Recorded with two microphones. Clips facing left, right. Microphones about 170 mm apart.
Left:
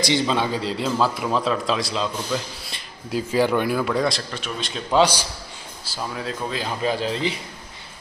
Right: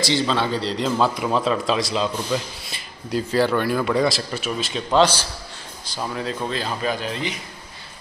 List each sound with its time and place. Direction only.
0.0 s a man's voice: 15° left (ahead or behind); by 3.2 s centre (ahead or behind)
3.2 s speech: 10° left (ahead or behind)
3.8 s a man's voice: centre (ahead or behind)
4.9 s a man's voice: 10° left (ahead or behind)
6.6 s speech: 25° left (ahead or behind)